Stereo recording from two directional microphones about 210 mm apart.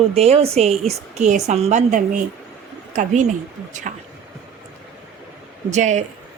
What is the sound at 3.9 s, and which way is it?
Speech, 40° right (ahead or behind).